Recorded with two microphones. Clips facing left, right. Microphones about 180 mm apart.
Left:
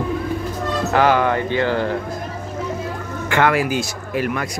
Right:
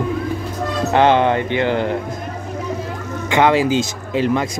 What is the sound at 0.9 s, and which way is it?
Speech, 25° right (ahead or behind).